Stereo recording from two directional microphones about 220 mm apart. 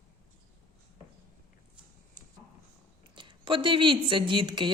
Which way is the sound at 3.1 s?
20° right (ahead or behind).